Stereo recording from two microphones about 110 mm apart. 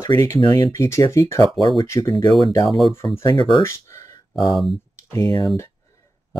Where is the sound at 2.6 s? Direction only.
Centre (ahead or behind).